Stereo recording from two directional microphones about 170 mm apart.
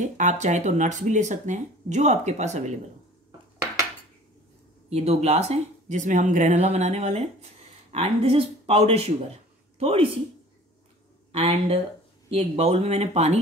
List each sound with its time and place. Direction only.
0.0 s speech: 45° right (ahead or behind)
4.8 s a woman's voice: 35° right (ahead or behind)
11.3 s speech: 35° right (ahead or behind)